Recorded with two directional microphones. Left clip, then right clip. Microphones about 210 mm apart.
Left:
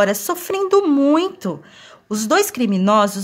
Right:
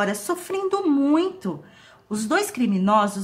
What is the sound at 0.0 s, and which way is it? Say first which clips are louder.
Speech: left 7 dB; 40° left (ahead or behind).